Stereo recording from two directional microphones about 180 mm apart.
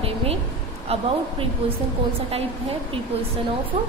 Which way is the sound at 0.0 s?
30° right (ahead or behind).